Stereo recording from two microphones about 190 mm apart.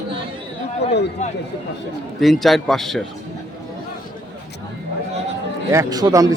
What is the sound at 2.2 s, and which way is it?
Speech, centre (ahead or behind).